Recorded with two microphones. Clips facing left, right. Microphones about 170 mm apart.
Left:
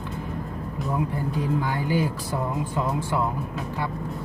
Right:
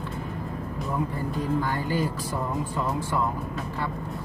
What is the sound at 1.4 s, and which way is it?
Speech, 15° left (ahead or behind).